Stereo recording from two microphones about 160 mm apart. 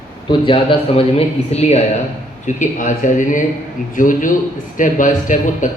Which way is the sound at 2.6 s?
55° left (ahead or behind).